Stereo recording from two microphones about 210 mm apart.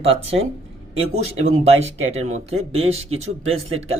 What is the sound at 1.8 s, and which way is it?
Speech, 30° right (ahead or behind).